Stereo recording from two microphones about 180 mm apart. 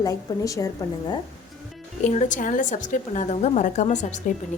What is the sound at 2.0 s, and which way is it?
A woman's voice, 40° left (ahead or behind).